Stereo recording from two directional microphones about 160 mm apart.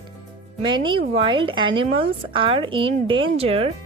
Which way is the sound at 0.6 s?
30° right (ahead or behind).